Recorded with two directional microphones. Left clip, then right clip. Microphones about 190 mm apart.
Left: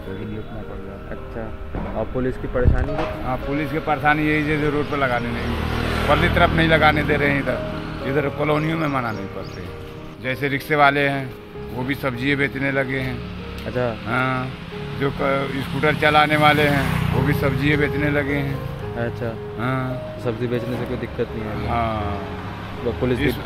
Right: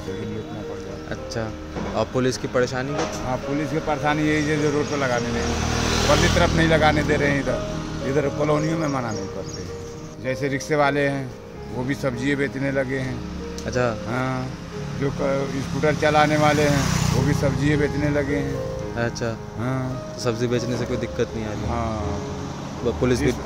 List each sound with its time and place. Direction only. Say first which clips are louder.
2.0 s speech: right 2 dB; 20° right (ahead or behind)
5.4 s speech: right 1 dB; 60° right (ahead or behind)
6.2 s speech: left 2 dB; 10° right (ahead or behind)
10.2 s speech: left 2 dB; 10° right (ahead or behind)
16.7 s speech: left 1 dB; 60° right (ahead or behind)
17.3 s speech: left 3 dB; 10° right (ahead or behind)
21.6 s speech: left 6 dB; 5° right (ahead or behind)